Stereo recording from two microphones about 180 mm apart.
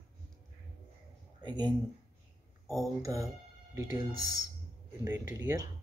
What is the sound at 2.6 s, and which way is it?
Speech, centre (ahead or behind).